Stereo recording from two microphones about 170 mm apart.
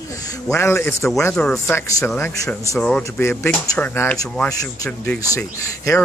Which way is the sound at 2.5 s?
5° left (ahead or behind).